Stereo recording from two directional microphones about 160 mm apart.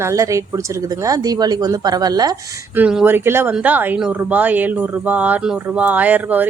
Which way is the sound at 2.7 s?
5° right (ahead or behind).